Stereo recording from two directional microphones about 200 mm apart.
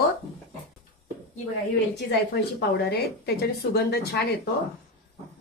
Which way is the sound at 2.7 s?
55° left (ahead or behind).